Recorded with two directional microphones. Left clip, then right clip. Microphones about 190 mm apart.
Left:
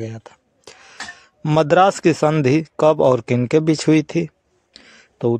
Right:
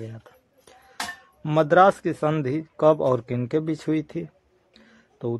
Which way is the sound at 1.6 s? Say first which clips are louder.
Left 3 dB; 40° left (ahead or behind).